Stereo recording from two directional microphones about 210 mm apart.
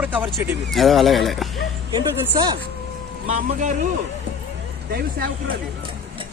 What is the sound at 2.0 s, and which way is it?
Speech, 20° right (ahead or behind).